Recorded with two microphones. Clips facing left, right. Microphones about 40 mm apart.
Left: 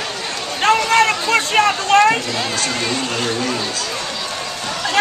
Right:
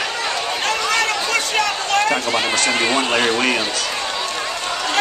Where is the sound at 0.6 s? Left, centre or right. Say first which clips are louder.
Left 8 dB; left.